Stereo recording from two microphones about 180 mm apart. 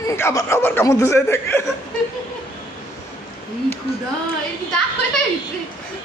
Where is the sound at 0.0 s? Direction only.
15° left (ahead or behind).